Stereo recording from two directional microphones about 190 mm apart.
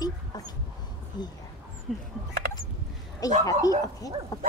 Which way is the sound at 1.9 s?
Centre (ahead or behind).